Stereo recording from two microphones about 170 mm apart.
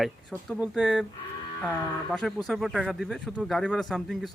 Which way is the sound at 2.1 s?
Centre (ahead or behind).